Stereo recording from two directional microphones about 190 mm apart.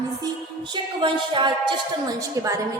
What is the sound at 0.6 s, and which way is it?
A woman's voice, 25° right (ahead or behind).